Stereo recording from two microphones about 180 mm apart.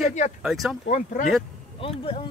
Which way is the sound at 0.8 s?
45° left (ahead or behind).